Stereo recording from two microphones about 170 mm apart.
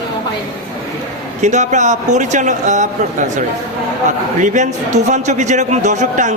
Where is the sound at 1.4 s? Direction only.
45° right (ahead or behind).